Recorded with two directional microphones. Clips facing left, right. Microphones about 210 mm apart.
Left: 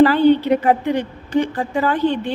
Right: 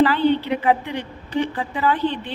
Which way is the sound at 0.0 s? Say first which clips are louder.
Left 5 dB; 45° left (ahead or behind).